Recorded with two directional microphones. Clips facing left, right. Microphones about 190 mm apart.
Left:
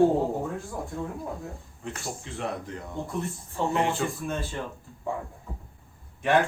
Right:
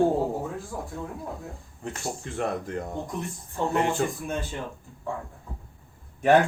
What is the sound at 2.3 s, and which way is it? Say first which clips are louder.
Speech: right 5 dB; 50° right (ahead or behind).